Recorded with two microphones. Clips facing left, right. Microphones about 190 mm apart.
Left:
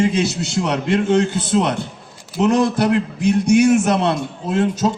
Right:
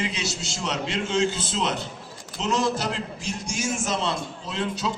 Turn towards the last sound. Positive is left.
turn(degrees=45)  # may be behind; listen again after turning